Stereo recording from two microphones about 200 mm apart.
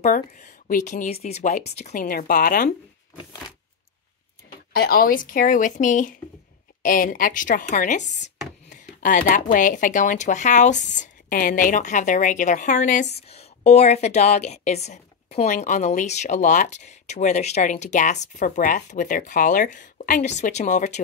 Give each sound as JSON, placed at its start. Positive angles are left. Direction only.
{"t": 0.7, "sound": "a woman's voice", "side_deg": 40}
{"t": 2.0, "sound": "speech", "side_deg": 45}
{"t": 4.7, "sound": "a woman's voice", "side_deg": 45}